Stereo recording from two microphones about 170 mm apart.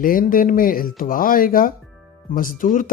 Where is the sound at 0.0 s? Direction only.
55° left (ahead or behind).